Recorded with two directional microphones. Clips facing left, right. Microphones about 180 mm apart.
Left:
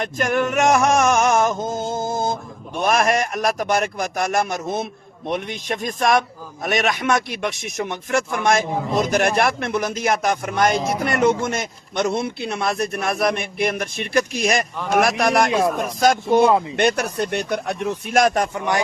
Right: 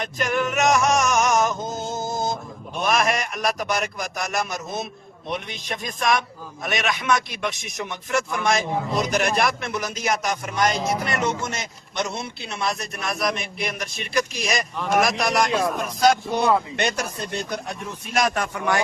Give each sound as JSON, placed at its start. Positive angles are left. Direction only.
{"t": 0.0, "sound": "music", "side_deg": 50}
{"t": 1.9, "sound": "a sound", "side_deg": 50}
{"t": 2.7, "sound": "a man's voice", "side_deg": 45}
{"t": 18.5, "sound": "speech", "side_deg": 20}